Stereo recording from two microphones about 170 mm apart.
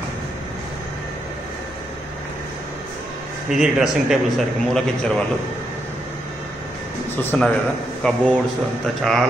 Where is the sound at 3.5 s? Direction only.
5° right (ahead or behind).